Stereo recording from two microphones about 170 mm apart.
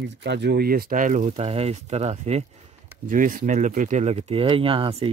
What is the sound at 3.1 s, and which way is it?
Speech, 50° right (ahead or behind).